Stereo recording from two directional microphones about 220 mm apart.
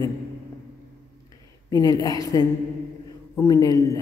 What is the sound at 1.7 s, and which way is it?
A woman's voice, 15° left (ahead or behind).